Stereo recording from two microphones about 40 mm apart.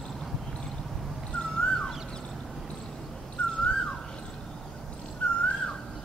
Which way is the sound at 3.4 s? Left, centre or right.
Left.